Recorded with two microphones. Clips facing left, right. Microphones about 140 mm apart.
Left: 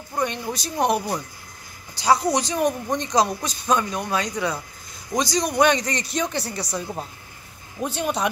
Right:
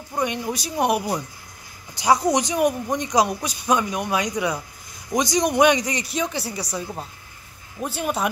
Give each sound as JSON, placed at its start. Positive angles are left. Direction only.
{"t": 0.1, "sound": "a man's voice", "side_deg": -10}